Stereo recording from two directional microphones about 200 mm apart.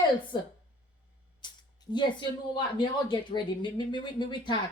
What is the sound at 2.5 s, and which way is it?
Speech, 25° left (ahead or behind).